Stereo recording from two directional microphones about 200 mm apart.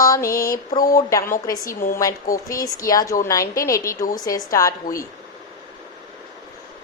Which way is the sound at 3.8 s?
45° left (ahead or behind).